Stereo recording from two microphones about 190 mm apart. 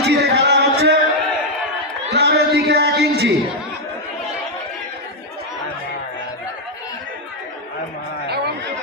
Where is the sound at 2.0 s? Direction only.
60° right (ahead or behind).